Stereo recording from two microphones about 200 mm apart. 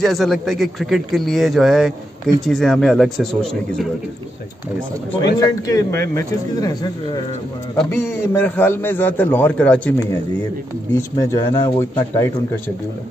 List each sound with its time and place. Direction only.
0.0 s a man's voice: centre (ahead or behind)
5.7 s a man's voice: 15° left (ahead or behind)
7.7 s a man's voice: 5° left (ahead or behind)